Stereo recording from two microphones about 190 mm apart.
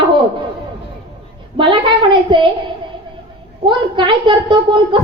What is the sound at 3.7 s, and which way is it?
Speech, 25° right (ahead or behind).